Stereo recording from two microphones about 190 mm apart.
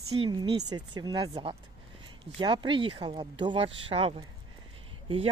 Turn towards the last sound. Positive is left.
turn(degrees=-30)  # may be behind; listen again after turning